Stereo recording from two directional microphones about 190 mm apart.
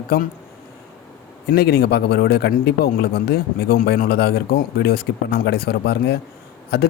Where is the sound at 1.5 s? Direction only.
55° left (ahead or behind).